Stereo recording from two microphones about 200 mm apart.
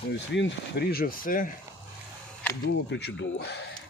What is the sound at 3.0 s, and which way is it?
Speech, 55° left (ahead or behind).